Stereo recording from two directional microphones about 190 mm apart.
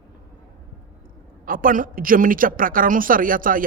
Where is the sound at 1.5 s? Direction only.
45° right (ahead or behind).